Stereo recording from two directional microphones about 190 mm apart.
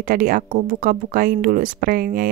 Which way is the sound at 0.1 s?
45° right (ahead or behind).